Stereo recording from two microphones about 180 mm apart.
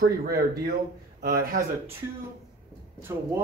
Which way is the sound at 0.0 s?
60° right (ahead or behind).